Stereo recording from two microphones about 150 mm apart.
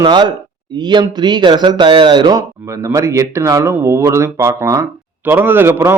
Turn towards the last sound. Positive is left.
turn(degrees=-15)  # may be behind; listen again after turning